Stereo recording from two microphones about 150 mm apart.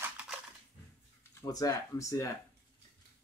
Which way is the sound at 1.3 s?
25° left (ahead or behind).